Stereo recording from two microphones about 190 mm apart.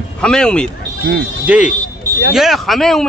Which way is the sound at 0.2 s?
5° left (ahead or behind).